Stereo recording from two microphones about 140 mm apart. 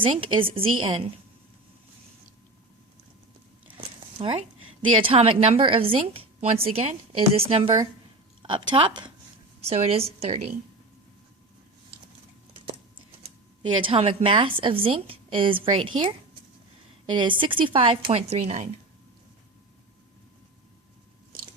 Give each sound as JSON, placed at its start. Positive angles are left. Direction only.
{"t": 0.0, "sound": "a woman's voice", "side_deg": -40}
{"t": 3.7, "sound": "zipper", "side_deg": -40}
{"t": 4.9, "sound": "a woman's voice", "side_deg": -40}
{"t": 9.6, "sound": "a woman's voice", "side_deg": -45}
{"t": 13.6, "sound": "a woman's voice", "side_deg": -40}